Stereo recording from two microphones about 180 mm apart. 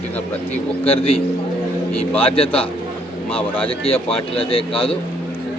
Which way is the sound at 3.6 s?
30° left (ahead or behind).